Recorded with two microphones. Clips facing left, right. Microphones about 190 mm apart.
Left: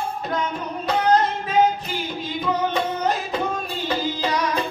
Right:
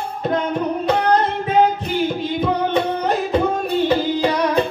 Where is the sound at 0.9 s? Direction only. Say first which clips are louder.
Even; 60° right (ahead or behind).